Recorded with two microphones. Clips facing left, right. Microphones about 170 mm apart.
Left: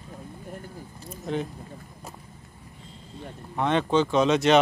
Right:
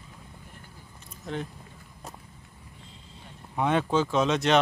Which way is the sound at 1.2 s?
5° left (ahead or behind).